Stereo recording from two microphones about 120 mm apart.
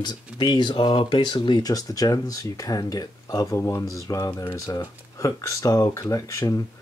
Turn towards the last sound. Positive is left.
turn(degrees=25)  # may be behind; listen again after turning